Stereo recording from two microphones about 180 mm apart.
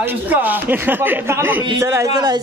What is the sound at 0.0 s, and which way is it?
Speech, 10° right (ahead or behind).